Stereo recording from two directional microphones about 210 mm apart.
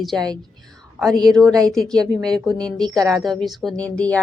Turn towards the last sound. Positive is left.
turn(degrees=5)  # may be behind; listen again after turning